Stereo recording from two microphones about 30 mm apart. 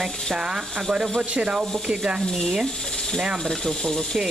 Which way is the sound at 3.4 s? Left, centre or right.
Centre.